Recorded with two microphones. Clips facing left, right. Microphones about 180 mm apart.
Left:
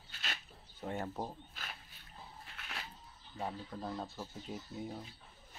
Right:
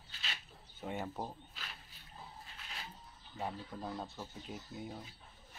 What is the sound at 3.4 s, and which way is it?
Speech, centre (ahead or behind).